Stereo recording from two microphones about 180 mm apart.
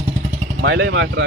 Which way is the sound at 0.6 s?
70° right (ahead or behind).